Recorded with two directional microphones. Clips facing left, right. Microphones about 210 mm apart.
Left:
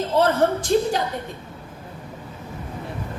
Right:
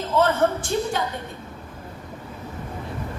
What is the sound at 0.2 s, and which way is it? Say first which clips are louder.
Speech: left 1 dB; 35° left (ahead or behind).